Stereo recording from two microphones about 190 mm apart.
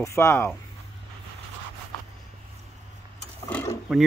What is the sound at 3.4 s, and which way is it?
Mechanisms, 10° left (ahead or behind).